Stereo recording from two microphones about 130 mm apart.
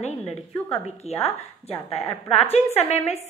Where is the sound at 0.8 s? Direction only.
55° left (ahead or behind).